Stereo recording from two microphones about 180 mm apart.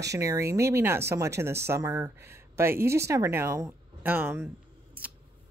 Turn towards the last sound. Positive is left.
turn(degrees=-10)  # may be behind; listen again after turning